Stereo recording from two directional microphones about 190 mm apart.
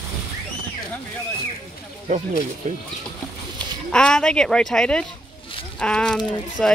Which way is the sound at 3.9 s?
5° left (ahead or behind).